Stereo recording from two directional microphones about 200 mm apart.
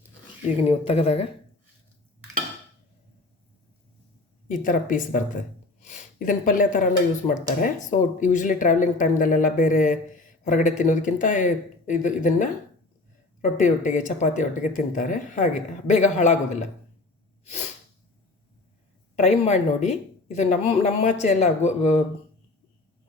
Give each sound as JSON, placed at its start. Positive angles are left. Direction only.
{"t": 0.7, "sound": "a woman's voice", "side_deg": 30}
{"t": 4.4, "sound": "speech", "side_deg": 40}
{"t": 19.1, "sound": "speech", "side_deg": 35}